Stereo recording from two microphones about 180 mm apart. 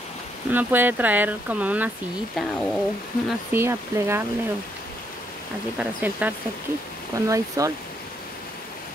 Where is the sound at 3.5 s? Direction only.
15° right (ahead or behind).